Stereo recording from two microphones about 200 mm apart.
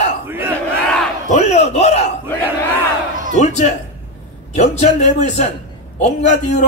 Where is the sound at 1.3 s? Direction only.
35° left (ahead or behind).